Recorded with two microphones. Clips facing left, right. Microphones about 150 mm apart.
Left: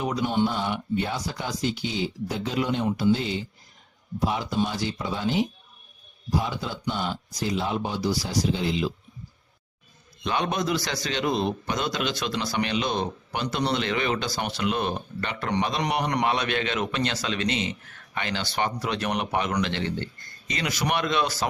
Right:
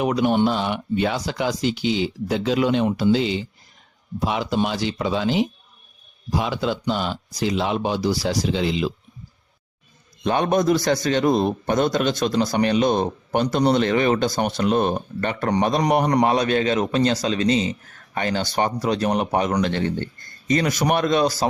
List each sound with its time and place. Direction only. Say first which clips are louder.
0.0 s speech: right 6 dB; 70° right (ahead or behind); by 8.9 s 90° right
10.2 s a man's voice: right 7 dB; 50° right (ahead or behind)